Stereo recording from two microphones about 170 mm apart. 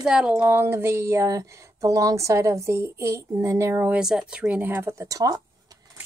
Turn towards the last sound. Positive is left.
turn(degrees=-25)  # may be behind; listen again after turning